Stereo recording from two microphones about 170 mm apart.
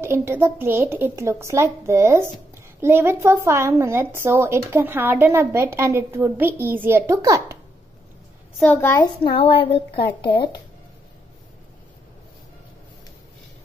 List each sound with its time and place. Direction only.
0.0 s a woman's voice: 15° right (ahead or behind)
9.0 s a woman's voice: 35° left (ahead or behind)